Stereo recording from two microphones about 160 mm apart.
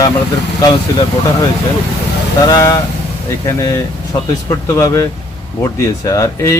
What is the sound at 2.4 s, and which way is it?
Speech, 25° left (ahead or behind).